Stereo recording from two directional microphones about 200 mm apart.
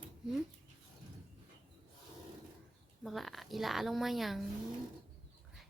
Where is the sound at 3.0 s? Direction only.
Centre (ahead or behind).